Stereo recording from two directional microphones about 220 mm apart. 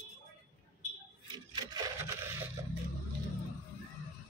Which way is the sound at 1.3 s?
20° right (ahead or behind).